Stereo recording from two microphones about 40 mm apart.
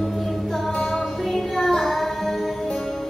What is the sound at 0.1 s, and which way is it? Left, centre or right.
Music, centre.